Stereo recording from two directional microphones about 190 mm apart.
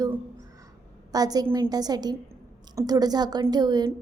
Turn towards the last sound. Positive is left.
turn(degrees=-20)  # may be behind; listen again after turning